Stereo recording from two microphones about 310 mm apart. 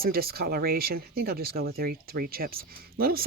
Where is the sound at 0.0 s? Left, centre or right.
Right.